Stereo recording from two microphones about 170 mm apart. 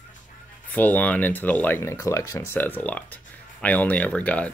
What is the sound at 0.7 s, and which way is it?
Speech, 10° left (ahead or behind).